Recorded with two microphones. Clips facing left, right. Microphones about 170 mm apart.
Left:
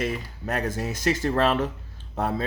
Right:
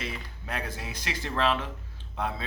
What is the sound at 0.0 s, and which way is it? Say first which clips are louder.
Speech: left 9 dB; 45° left (ahead or behind).